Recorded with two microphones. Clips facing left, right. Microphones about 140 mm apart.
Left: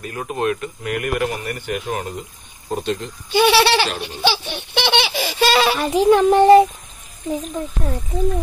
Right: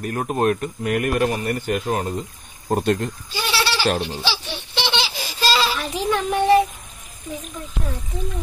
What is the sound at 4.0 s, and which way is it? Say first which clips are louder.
Baby laughter: left 4 dB; 55° left (ahead or behind).